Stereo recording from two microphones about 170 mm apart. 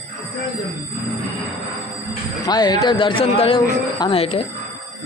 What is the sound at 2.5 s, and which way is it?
Speech, 25° left (ahead or behind).